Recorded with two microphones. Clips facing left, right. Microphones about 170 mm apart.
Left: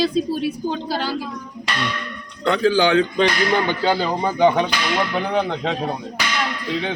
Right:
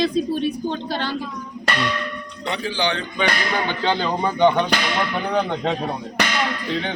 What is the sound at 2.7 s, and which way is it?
Speech, 45° left (ahead or behind).